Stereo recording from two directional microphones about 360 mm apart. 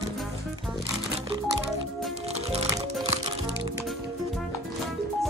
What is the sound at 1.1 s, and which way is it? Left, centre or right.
Music, centre.